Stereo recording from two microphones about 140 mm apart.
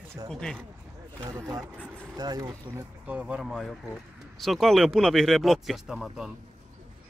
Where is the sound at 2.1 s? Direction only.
30° right (ahead or behind).